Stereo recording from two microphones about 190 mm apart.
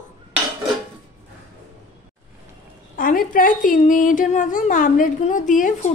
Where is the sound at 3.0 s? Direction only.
45° left (ahead or behind).